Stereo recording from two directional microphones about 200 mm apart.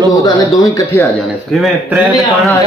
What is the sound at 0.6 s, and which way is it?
Speech, 15° left (ahead or behind).